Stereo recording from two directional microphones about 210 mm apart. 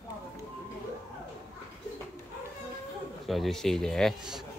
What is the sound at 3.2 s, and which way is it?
Speech, centre (ahead or behind).